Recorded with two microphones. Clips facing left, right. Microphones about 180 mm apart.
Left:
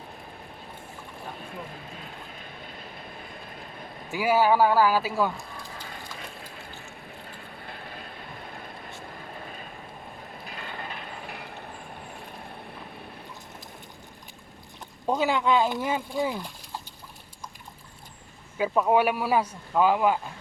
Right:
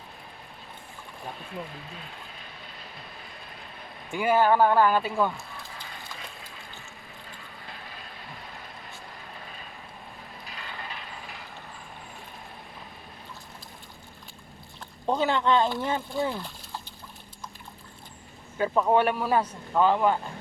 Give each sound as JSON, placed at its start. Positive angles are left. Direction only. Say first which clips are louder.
{"t": 4.1, "sound": "speech", "louder": "even", "side_deg": 5}
{"t": 7.3, "sound": "vehicle", "louder": "left 3 dB", "side_deg": 50}
{"t": 10.4, "sound": "ratchet", "louder": "left 3 dB", "side_deg": 50}
{"t": 15.0, "sound": "speech", "louder": "even", "side_deg": 10}
{"t": 18.5, "sound": "speech", "louder": "even", "side_deg": 10}